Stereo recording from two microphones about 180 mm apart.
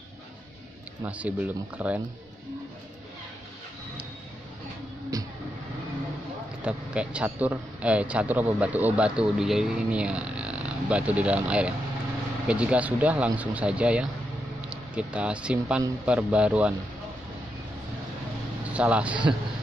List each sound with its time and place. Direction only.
1.0 s a man's voice: 10° right (ahead or behind)
5.1 s a sound: 20° right (ahead or behind)
6.6 s a man's voice: 5° right (ahead or behind)
18.7 s a man's voice: 5° right (ahead or behind)